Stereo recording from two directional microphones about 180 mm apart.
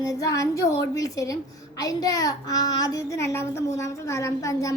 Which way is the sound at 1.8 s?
20° left (ahead or behind).